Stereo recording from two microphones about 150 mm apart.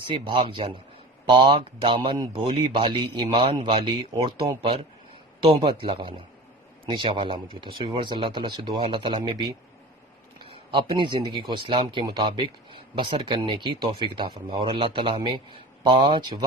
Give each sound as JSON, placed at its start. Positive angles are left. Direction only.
{"t": 0.1, "sound": "speech", "side_deg": -35}
{"t": 10.7, "sound": "speech", "side_deg": -30}